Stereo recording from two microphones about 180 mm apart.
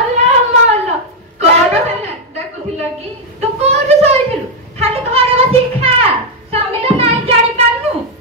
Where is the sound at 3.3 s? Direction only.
35° right (ahead or behind).